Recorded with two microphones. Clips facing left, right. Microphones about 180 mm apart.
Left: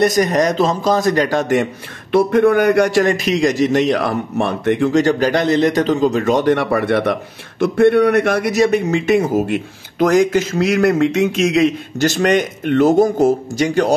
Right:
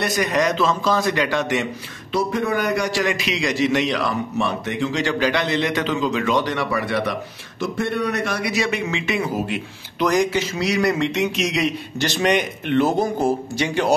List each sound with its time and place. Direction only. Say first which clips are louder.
0.0 s a man's voice: left 6 dB; 45° left (ahead or behind)
2.1 s a man's voice: left 9 dB; 55° left (ahead or behind)